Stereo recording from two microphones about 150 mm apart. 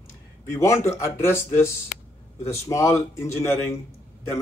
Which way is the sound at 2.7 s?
20° left (ahead or behind).